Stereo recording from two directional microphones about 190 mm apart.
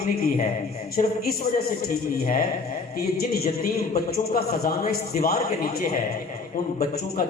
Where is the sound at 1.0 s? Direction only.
40° left (ahead or behind).